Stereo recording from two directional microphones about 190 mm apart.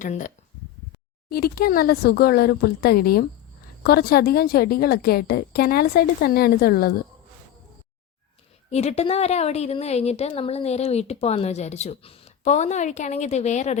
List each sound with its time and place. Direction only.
0.0 s a woman's voice: 40° left (ahead or behind)
1.3 s a woman's voice: 55° left (ahead or behind)
8.7 s a woman's voice: 35° left (ahead or behind)